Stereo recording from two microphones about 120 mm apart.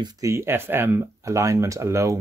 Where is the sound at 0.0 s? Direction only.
25° right (ahead or behind).